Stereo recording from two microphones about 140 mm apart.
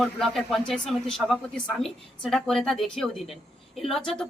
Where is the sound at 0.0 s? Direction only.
Centre (ahead or behind).